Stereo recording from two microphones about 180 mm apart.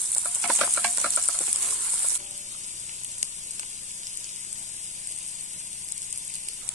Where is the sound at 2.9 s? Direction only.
40° right (ahead or behind).